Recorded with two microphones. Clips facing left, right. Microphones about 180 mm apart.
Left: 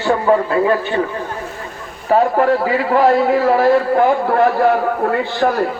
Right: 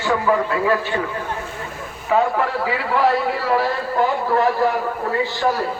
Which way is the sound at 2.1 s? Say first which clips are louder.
Left 6 dB; 45° left (ahead or behind).